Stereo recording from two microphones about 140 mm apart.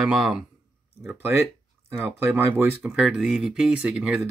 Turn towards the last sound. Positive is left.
turn(degrees=-5)  # may be behind; listen again after turning